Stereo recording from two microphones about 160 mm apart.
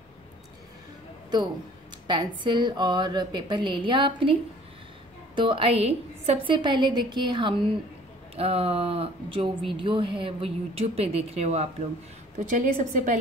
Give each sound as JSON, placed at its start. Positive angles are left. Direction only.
{"t": 2.0, "sound": "a woman's voice", "side_deg": -30}